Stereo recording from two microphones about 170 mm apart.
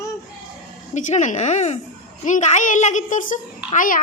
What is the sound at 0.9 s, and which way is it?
A woman's voice, 45° left (ahead or behind).